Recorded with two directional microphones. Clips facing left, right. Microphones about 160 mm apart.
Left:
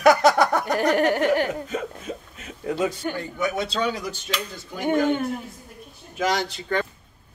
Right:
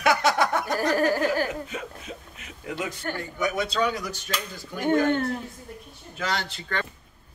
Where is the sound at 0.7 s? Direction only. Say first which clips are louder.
Left 3 dB; 20° left (ahead or behind).